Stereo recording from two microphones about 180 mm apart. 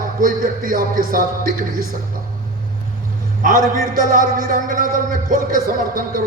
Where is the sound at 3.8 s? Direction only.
50° right (ahead or behind).